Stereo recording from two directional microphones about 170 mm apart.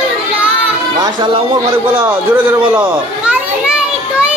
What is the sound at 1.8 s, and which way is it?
Speech, 10° right (ahead or behind).